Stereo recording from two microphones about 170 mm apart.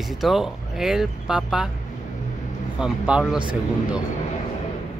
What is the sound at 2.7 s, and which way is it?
Speech, 5° right (ahead or behind).